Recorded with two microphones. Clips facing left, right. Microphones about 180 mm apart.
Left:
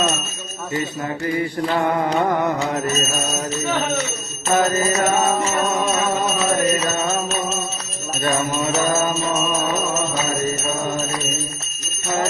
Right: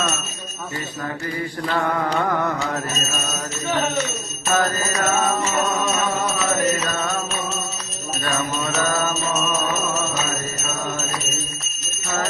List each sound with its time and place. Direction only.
1.7 s music: 20° left (ahead or behind)
4.4 s music: 20° left (ahead or behind)
6.7 s music: 25° left (ahead or behind)
8.2 s jingle bell: 25° left (ahead or behind)